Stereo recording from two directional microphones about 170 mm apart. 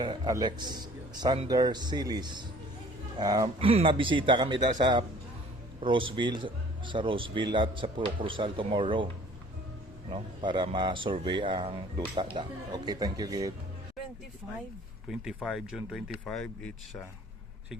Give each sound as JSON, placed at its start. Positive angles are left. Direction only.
{"t": 0.0, "sound": "speech", "side_deg": -25}
{"t": 3.7, "sound": "speech", "side_deg": -35}
{"t": 10.1, "sound": "speech", "side_deg": -25}
{"t": 15.1, "sound": "speech", "side_deg": 0}